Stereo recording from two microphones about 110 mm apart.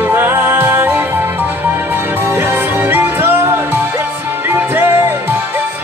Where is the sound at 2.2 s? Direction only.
25° right (ahead or behind).